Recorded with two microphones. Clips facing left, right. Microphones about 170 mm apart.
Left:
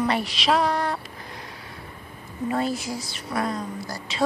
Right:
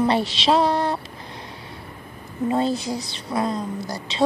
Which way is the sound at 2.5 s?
25° right (ahead or behind).